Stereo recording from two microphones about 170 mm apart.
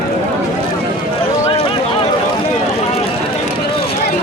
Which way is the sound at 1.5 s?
30° left (ahead or behind).